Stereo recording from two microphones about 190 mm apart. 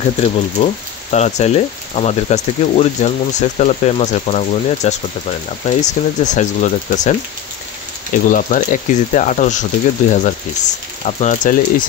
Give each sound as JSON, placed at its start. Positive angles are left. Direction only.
{"t": 0.0, "sound": "speech", "side_deg": 35}
{"t": 8.3, "sound": "speech", "side_deg": 45}